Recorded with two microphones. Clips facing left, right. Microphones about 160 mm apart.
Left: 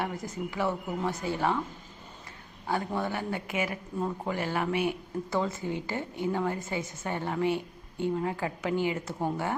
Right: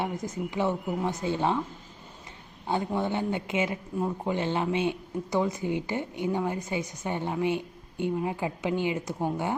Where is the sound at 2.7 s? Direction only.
20° right (ahead or behind).